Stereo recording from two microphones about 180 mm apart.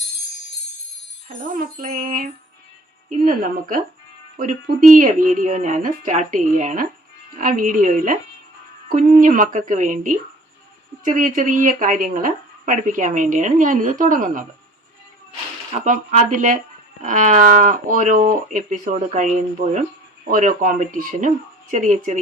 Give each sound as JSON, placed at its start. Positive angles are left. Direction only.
{"t": 1.5, "sound": "speech", "side_deg": -55}
{"t": 15.7, "sound": "speech", "side_deg": -40}